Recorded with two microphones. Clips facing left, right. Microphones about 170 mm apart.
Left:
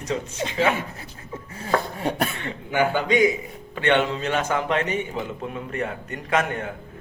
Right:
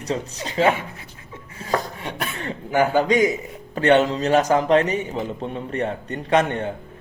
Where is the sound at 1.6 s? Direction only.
40° left (ahead or behind).